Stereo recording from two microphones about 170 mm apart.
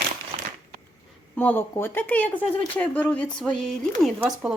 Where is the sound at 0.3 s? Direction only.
30° right (ahead or behind).